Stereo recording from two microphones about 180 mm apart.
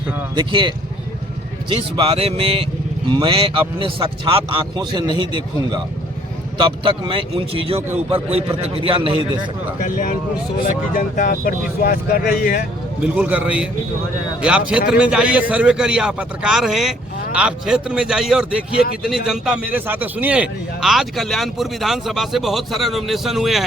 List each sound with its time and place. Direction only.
0.3 s a man's voice: 25° right (ahead or behind)
1.7 s a man's voice: 30° right (ahead or behind)
9.8 s speech: 50° left (ahead or behind)
13.0 s a man's voice: 10° right (ahead or behind)